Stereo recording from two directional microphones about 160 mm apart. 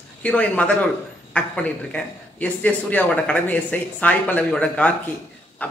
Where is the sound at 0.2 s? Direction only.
10° left (ahead or behind).